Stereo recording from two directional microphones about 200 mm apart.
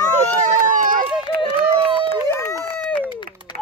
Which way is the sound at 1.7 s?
25° right (ahead or behind).